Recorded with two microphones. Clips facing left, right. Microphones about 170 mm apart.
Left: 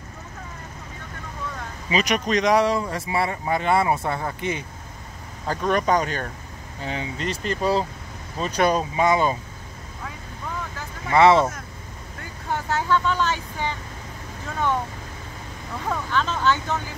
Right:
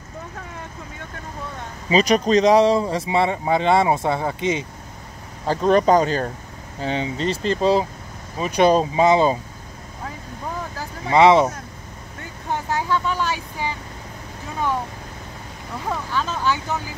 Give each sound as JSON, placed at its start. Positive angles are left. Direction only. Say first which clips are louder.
{"t": 1.9, "sound": "speech", "louder": "right 6 dB", "side_deg": -35}
{"t": 5.5, "sound": "speech", "louder": "right 6 dB", "side_deg": -30}
{"t": 8.4, "sound": "speech", "louder": "right 4 dB", "side_deg": -10}
{"t": 8.6, "sound": "speech", "louder": "right 5 dB", "side_deg": -25}
{"t": 11.1, "sound": "speech", "louder": "right 2 dB", "side_deg": -15}
{"t": 15.9, "sound": "speech", "louder": "even", "side_deg": -10}